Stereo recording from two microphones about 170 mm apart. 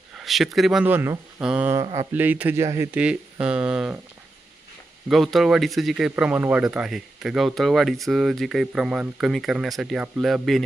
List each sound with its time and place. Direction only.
0.2 s speech: centre (ahead or behind)
1.8 s speech: 25° right (ahead or behind)
2.1 s speech: 10° right (ahead or behind)
5.0 s speech: centre (ahead or behind)